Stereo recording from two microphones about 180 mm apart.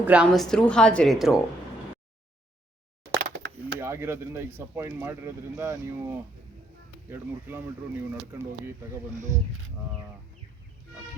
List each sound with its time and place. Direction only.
0.0 s a woman's voice: 5° right (ahead or behind)
3.3 s a sound: 90° right
3.8 s speech: 15° right (ahead or behind)